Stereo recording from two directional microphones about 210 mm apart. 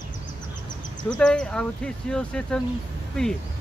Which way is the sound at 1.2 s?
5° left (ahead or behind).